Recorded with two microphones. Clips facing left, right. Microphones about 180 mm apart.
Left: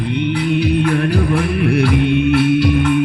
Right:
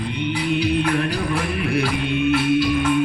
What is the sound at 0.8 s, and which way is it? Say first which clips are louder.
Music: left 5 dB; 55° left (ahead or behind).